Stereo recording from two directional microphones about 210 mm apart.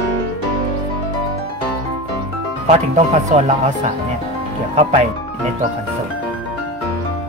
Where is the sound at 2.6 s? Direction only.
35° right (ahead or behind).